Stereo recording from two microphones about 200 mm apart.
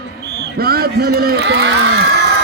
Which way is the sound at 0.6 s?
50° right (ahead or behind).